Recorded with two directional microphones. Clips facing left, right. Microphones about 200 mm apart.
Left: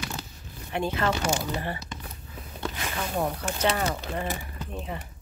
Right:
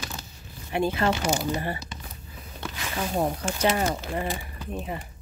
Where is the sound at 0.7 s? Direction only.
10° right (ahead or behind).